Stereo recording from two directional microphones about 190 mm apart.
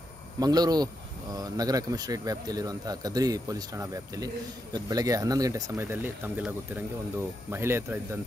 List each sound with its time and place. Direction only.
0.4 s speech: 20° right (ahead or behind)